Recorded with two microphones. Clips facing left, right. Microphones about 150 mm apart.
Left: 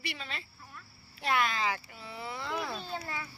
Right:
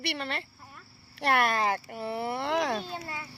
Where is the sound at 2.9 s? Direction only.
15° right (ahead or behind).